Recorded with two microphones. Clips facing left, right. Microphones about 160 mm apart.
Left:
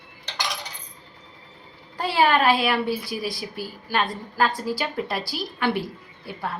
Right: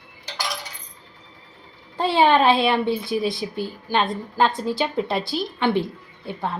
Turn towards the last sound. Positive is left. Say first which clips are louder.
# right 3 dB
turn(degrees=-25)  # may be behind; listen again after turning